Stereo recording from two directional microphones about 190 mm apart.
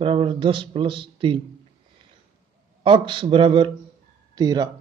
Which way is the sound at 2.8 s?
25° right (ahead or behind).